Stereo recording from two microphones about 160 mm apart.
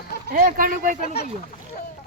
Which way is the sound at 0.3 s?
55° right (ahead or behind).